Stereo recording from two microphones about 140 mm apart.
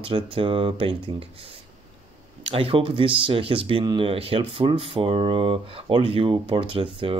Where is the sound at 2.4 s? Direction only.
45° right (ahead or behind).